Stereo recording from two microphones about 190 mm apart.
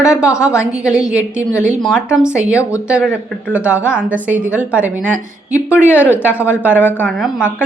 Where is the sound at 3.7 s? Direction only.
10° left (ahead or behind).